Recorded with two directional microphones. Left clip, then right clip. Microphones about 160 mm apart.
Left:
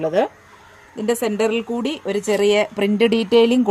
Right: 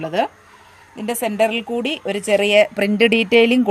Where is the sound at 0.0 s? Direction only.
25° right (ahead or behind).